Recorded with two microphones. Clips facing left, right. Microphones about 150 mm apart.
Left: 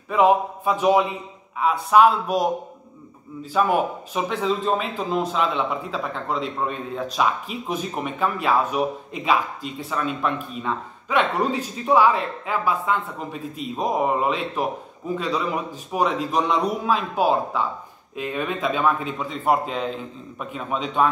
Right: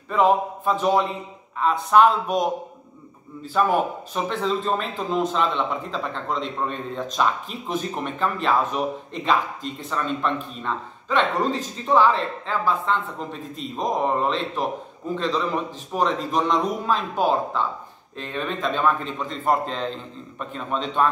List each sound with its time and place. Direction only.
0.1 s a man's voice: 5° left (ahead or behind)
3.5 s a man's voice: 5° left (ahead or behind)